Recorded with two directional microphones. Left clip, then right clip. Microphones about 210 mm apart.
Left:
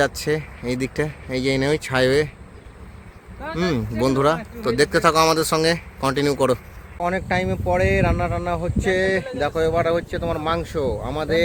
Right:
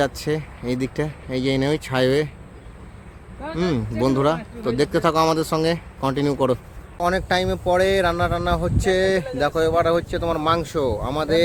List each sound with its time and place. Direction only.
0.0 s speech: centre (ahead or behind)
3.5 s speech: centre (ahead or behind); by 11.3 s 15° right (ahead or behind)